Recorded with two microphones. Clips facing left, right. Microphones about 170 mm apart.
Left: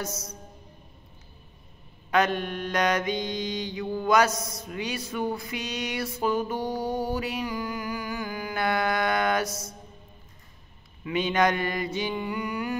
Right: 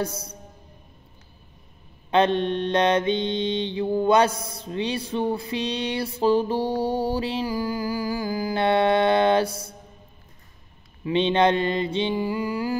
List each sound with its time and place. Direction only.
0.0 s music: 30° right (ahead or behind)
2.0 s mantra: 25° right (ahead or behind)
11.1 s mantra: 30° right (ahead or behind)